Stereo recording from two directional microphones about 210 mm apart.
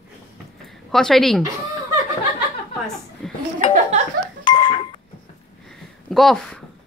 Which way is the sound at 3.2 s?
Centre (ahead or behind).